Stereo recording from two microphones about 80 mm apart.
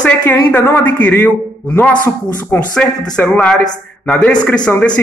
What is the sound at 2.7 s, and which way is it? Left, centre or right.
A man's voice, centre.